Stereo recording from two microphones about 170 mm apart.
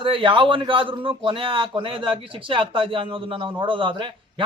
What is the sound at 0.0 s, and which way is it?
A man's voice, 30° right (ahead or behind).